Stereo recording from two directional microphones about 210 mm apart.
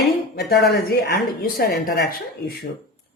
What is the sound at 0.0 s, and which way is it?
A woman's voice, 50° left (ahead or behind).